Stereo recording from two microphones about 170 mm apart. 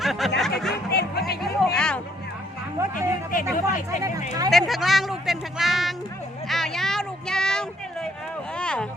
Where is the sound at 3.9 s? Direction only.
20° right (ahead or behind).